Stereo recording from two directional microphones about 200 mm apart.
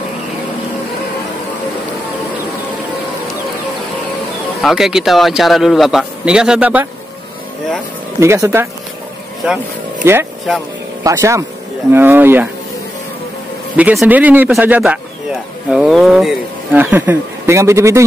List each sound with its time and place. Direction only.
4.6 s a man's voice: centre (ahead or behind)
8.2 s speech: 15° right (ahead or behind)
10.0 s speech: 15° right (ahead or behind)
13.7 s speech: 5° right (ahead or behind)